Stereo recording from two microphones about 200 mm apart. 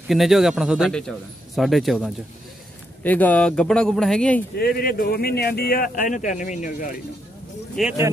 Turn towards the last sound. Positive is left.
turn(degrees=0)  # may be behind; listen again after turning